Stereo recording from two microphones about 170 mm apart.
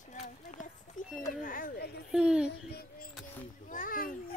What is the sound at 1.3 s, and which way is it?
Speech, 55° left (ahead or behind).